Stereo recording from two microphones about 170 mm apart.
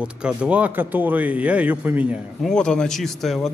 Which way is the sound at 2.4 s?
5° left (ahead or behind).